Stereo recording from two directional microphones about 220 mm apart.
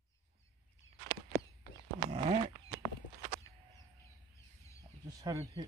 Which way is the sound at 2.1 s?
30° right (ahead or behind).